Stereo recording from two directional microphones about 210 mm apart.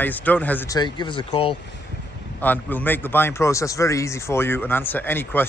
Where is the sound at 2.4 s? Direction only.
10° left (ahead or behind).